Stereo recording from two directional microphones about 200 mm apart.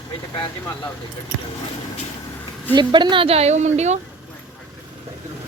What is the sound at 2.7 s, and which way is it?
A woman's voice, 25° right (ahead or behind).